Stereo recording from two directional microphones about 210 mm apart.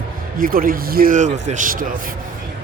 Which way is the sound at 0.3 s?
45° right (ahead or behind).